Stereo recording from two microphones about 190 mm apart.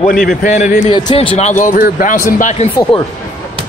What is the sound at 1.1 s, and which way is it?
Speech, 30° left (ahead or behind).